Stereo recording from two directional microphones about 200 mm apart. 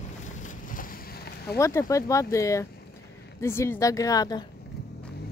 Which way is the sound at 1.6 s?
15° left (ahead or behind).